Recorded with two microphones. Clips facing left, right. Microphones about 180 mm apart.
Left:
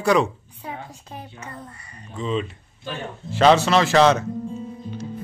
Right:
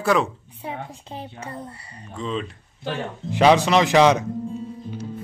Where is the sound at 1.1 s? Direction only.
25° right (ahead or behind).